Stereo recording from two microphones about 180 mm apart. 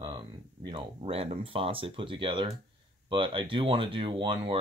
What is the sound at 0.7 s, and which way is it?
Speech, 30° right (ahead or behind).